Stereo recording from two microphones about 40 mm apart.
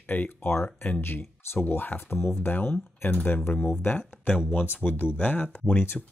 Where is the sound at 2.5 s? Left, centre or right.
Left.